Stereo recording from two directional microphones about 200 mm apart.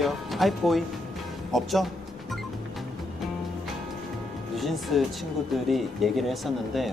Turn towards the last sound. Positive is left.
turn(degrees=0)  # may be behind; listen again after turning